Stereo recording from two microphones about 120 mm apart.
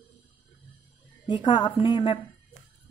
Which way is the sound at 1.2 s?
40° left (ahead or behind).